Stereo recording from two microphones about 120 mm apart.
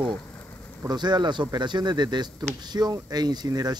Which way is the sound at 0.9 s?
35° right (ahead or behind).